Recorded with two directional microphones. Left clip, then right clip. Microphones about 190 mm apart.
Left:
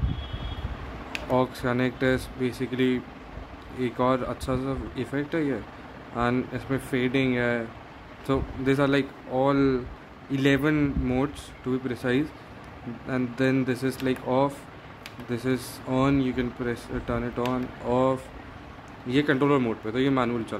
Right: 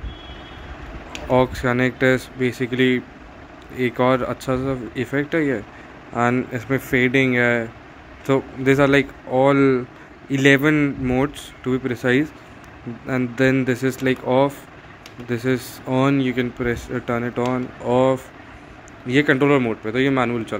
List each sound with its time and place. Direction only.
1.3 s speech: 20° right (ahead or behind)